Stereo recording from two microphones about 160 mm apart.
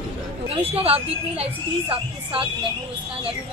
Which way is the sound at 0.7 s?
35° right (ahead or behind).